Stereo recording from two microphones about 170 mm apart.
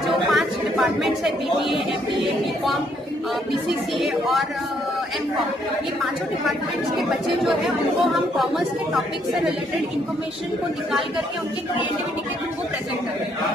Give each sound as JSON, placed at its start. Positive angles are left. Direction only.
{"t": 0.0, "sound": "a sound", "side_deg": 0}
{"t": 4.0, "sound": "speech", "side_deg": 0}
{"t": 7.0, "sound": "speech", "side_deg": 0}